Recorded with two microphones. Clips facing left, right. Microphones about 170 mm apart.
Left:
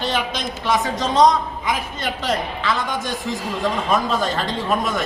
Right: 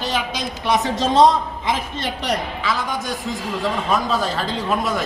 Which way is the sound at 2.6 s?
Centre (ahead or behind).